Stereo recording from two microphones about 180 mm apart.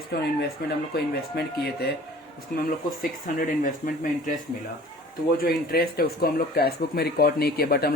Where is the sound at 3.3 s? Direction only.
50° left (ahead or behind).